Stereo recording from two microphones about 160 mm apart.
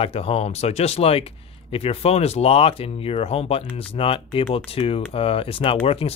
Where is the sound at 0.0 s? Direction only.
40° left (ahead or behind).